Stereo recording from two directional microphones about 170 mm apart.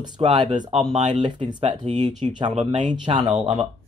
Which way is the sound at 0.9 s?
40° right (ahead or behind).